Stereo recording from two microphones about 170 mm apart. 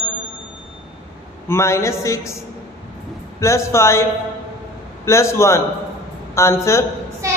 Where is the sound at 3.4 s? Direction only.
15° left (ahead or behind).